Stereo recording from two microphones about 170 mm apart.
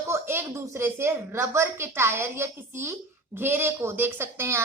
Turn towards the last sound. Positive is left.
turn(degrees=-15)  # may be behind; listen again after turning